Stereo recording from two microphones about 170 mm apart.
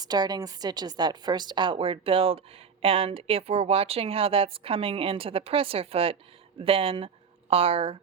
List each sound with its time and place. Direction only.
0.0 s a woman's voice: 25° right (ahead or behind)